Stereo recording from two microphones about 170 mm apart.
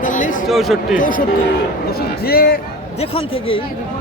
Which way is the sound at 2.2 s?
65° left (ahead or behind).